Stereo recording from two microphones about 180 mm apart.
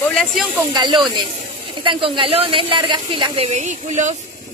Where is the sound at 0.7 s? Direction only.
25° right (ahead or behind); by 4.1 s 45° right (ahead or behind).